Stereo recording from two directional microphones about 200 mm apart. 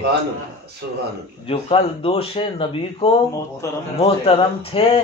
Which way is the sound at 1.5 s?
30° left (ahead or behind).